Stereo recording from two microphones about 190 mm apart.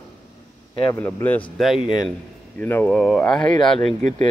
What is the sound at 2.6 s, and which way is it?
Speech, 10° left (ahead or behind).